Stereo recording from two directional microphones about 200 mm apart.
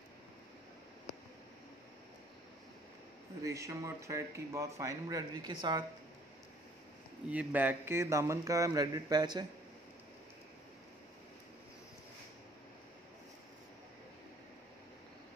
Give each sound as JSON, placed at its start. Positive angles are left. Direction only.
{"t": 3.4, "sound": "speech", "side_deg": -15}
{"t": 7.2, "sound": "speech", "side_deg": -10}